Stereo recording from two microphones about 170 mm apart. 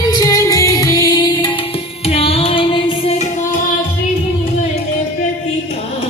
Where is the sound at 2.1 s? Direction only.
35° left (ahead or behind).